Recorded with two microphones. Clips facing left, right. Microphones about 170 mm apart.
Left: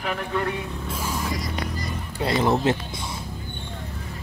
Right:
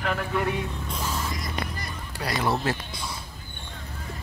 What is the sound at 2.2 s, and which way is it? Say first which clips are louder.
Speech: left 5 dB; 25° left (ahead or behind).